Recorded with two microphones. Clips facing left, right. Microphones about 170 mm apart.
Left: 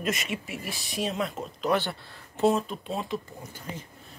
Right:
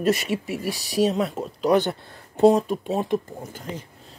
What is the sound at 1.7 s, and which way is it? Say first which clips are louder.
Speech: right 7 dB; 20° right (ahead or behind).